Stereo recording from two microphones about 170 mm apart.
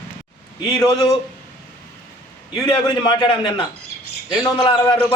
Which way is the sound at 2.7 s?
30° left (ahead or behind).